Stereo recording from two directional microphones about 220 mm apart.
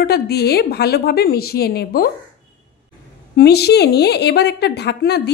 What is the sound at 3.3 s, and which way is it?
A woman's voice, 45° left (ahead or behind).